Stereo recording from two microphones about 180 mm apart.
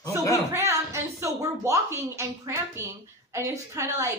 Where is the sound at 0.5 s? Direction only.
15° right (ahead or behind).